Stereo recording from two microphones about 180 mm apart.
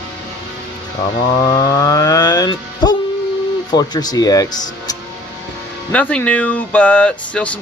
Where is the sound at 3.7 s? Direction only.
20° left (ahead or behind).